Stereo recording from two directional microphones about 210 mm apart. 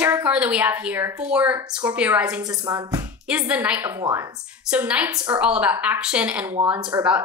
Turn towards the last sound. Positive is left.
turn(degrees=-15)  # may be behind; listen again after turning